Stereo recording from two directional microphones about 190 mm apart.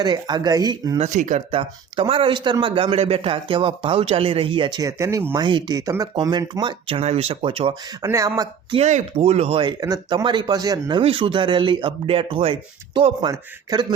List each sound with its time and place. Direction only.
0.0 s speech: 20° right (ahead or behind)
0.9 s speech: 40° right (ahead or behind)
8.0 s speech: 15° right (ahead or behind)
8.7 s speech: 35° right (ahead or behind); by 13.8 s 20° right (ahead or behind)